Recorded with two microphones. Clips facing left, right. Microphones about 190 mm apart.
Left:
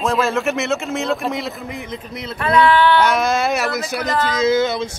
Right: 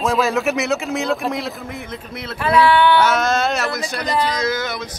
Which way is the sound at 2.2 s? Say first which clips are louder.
Even; 5° right (ahead or behind).